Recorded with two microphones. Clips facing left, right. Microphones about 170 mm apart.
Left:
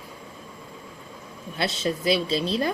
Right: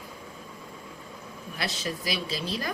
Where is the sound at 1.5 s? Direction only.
25° left (ahead or behind).